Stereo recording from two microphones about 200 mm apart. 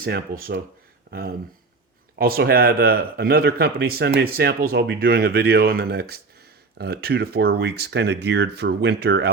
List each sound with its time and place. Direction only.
0.0 s speech: 45° right (ahead or behind)
2.1 s speech: 50° right (ahead or behind)